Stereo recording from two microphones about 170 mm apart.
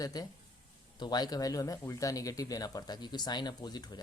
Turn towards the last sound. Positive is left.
turn(degrees=25)  # may be behind; listen again after turning